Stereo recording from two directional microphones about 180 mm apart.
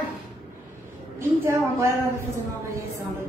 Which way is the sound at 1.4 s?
10° right (ahead or behind).